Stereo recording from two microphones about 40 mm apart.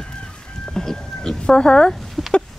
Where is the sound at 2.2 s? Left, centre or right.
Centre.